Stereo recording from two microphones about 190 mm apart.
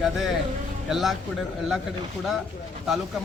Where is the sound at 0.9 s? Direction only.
Centre (ahead or behind).